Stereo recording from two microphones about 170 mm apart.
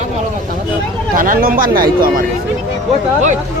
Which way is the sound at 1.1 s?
55° right (ahead or behind).